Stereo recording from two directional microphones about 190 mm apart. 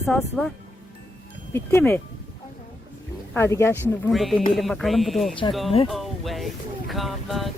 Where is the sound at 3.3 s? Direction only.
15° left (ahead or behind).